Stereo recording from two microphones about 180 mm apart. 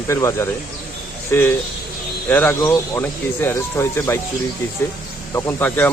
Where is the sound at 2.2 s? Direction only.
10° left (ahead or behind).